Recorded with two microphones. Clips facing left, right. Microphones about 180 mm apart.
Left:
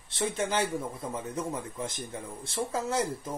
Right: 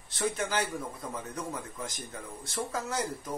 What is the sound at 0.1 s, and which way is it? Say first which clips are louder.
Speech: left 1 dB; 25° left (ahead or behind).